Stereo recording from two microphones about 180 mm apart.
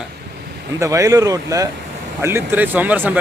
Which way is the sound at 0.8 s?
20° right (ahead or behind).